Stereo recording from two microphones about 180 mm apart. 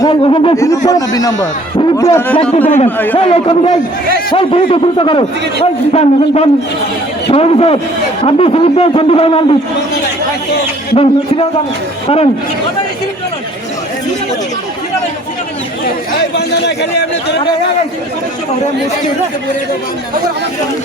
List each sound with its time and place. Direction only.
0.0 s a man's voice: 25° left (ahead or behind)
0.5 s a man's voice: 15° left (ahead or behind)
2.6 s a man's voice: 35° left (ahead or behind)
10.9 s a man's voice: 30° left (ahead or behind)
16.3 s a man's voice: 70° left (ahead or behind)